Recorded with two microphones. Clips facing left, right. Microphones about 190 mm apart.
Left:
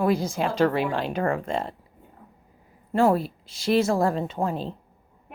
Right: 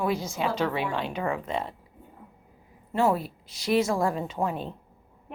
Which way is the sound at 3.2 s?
25° left (ahead or behind).